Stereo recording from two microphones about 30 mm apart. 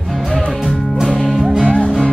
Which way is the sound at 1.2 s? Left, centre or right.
Centre.